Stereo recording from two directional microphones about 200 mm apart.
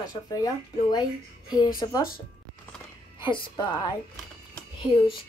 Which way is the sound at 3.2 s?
25° left (ahead or behind).